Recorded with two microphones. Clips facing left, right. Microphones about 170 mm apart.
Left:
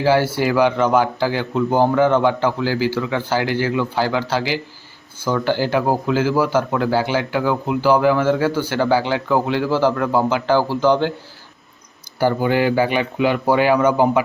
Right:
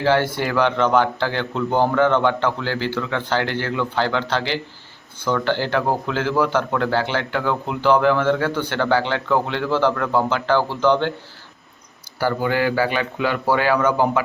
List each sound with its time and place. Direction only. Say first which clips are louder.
0.0 s speech: left 2 dB; 10° left (ahead or behind)
12.2 s speech: left 3 dB; 20° left (ahead or behind)